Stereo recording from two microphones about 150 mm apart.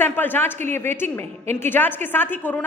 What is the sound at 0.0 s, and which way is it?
Speech, 10° left (ahead or behind).